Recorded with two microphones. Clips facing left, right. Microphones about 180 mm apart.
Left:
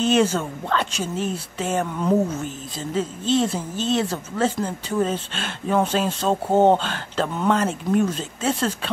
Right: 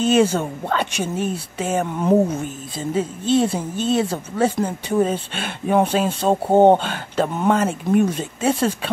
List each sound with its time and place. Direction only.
0.0 s speech: 10° right (ahead or behind)
2.0 s speech: 25° right (ahead or behind)
2.8 s speech: 10° right (ahead or behind)